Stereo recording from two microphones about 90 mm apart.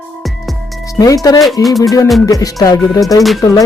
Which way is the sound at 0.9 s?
40° left (ahead or behind).